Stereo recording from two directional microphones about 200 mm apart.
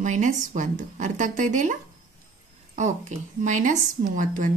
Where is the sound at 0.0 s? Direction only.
40° right (ahead or behind).